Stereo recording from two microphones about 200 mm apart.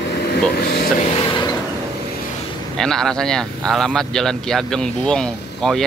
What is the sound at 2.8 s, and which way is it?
Speech, 5° left (ahead or behind).